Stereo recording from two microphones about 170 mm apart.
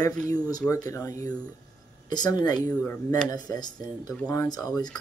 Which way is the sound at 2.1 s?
25° left (ahead or behind).